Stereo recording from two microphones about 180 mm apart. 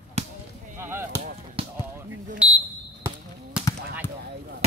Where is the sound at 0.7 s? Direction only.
15° right (ahead or behind).